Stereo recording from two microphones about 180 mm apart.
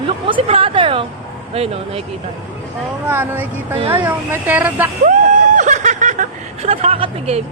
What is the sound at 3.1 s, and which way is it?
Speech, 10° right (ahead or behind).